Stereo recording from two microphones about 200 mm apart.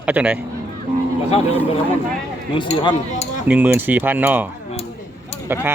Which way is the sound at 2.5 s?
25° left (ahead or behind).